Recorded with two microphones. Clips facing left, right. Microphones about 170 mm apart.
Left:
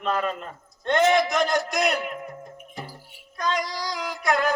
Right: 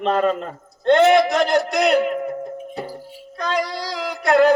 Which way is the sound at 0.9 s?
60° right (ahead or behind).